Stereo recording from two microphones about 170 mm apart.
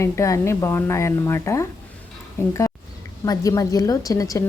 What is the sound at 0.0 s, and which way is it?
A woman's voice, 15° left (ahead or behind).